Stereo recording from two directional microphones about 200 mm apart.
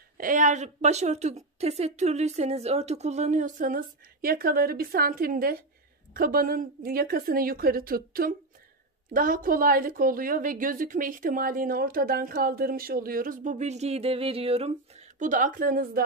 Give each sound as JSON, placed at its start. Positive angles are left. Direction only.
{"t": 0.2, "sound": "a woman's voice", "side_deg": -40}